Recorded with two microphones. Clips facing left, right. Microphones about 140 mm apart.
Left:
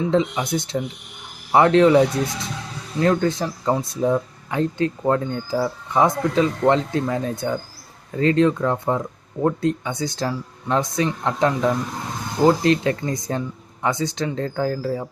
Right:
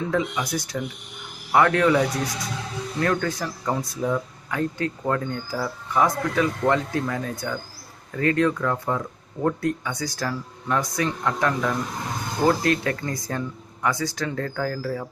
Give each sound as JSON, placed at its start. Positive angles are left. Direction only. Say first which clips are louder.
{"t": 0.0, "sound": "speech", "louder": "left 5 dB", "side_deg": 25}